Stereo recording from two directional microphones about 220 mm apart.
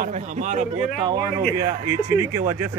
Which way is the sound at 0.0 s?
35° right (ahead or behind).